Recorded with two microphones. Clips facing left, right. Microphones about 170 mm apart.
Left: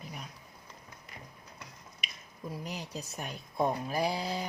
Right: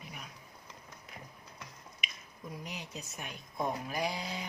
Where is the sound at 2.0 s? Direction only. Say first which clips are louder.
Right 1 dB; 35° left (ahead or behind).